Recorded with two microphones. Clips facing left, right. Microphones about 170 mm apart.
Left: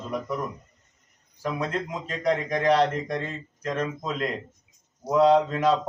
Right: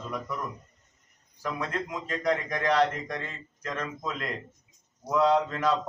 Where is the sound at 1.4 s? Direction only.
25° left (ahead or behind).